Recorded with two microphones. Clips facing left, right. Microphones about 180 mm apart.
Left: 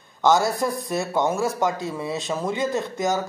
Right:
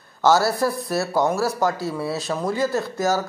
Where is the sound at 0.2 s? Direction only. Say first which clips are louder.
Right 1 dB; 15° left (ahead or behind).